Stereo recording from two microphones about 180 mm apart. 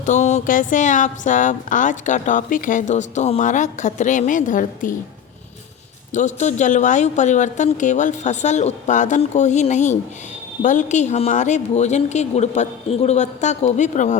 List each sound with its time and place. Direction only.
0.0 s speech: 40° left (ahead or behind)
6.1 s a woman's voice: 40° left (ahead or behind)